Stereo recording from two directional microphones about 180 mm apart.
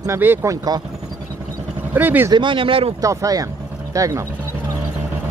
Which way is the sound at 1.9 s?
10° right (ahead or behind).